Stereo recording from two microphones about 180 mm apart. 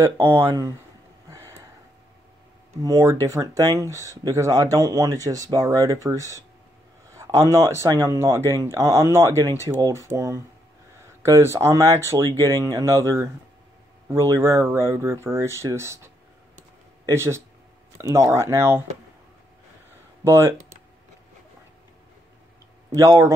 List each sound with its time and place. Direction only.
0.0 s speech: 15° right (ahead or behind)
2.8 s speech: 15° right (ahead or behind)
19.9 s a sound: 15° right (ahead or behind)
22.8 s speech: 20° right (ahead or behind)